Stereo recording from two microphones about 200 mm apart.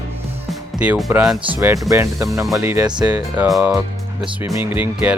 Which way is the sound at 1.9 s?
15° right (ahead or behind).